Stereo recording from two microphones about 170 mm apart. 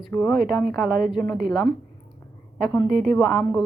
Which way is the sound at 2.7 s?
5° left (ahead or behind).